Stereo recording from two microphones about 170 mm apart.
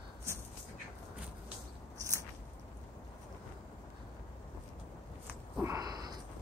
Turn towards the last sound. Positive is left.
turn(degrees=-20)  # may be behind; listen again after turning